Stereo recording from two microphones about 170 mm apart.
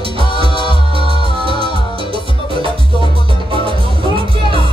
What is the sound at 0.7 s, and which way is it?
Music, 30° right (ahead or behind).